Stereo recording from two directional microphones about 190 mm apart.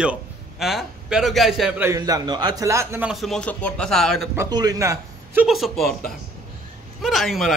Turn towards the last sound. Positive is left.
turn(degrees=0)  # may be behind; listen again after turning